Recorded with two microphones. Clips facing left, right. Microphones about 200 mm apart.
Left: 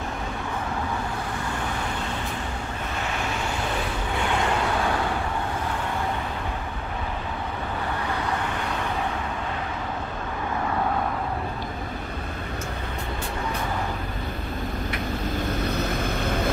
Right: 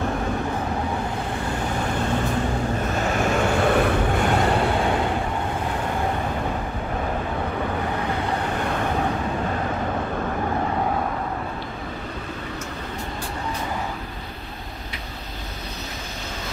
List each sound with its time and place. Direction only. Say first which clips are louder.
3.5 s vehicle: right 9 dB; 60° right (ahead or behind)